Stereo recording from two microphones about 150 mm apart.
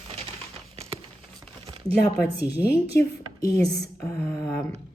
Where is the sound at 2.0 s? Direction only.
90° left.